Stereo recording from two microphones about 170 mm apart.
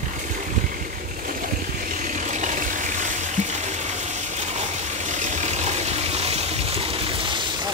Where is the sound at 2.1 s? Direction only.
45° right (ahead or behind).